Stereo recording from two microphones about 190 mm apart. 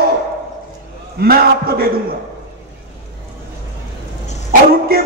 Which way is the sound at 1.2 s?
50° right (ahead or behind).